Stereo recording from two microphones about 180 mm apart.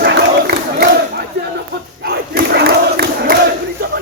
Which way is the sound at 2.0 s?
65° right (ahead or behind).